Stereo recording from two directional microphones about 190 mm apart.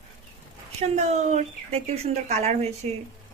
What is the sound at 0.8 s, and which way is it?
Speech, 35° right (ahead or behind).